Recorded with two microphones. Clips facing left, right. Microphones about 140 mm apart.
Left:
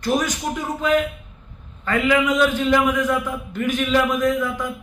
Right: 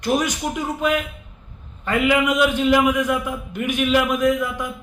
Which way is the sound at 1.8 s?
10° right (ahead or behind).